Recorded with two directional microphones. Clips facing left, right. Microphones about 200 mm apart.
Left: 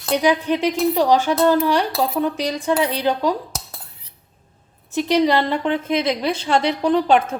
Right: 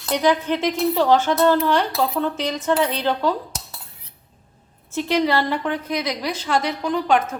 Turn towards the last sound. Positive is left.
turn(degrees=30)  # may be behind; listen again after turning